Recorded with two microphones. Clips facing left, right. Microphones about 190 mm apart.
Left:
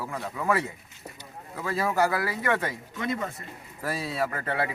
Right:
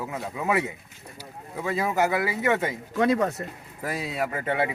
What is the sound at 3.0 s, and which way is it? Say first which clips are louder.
Speech: right 9 dB; 75° right (ahead or behind).